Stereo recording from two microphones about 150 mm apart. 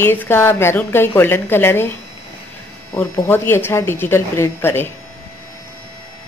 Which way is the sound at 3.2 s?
15° left (ahead or behind).